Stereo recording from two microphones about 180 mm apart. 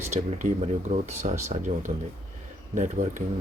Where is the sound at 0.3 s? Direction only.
45° right (ahead or behind).